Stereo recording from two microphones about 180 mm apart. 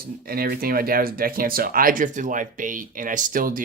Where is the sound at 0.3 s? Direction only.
55° right (ahead or behind).